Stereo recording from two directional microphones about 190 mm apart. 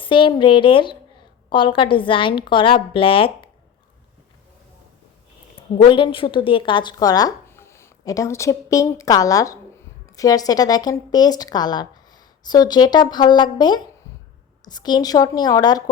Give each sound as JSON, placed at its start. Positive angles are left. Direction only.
{"t": 0.0, "sound": "speech", "side_deg": 25}
{"t": 5.7, "sound": "speech", "side_deg": 25}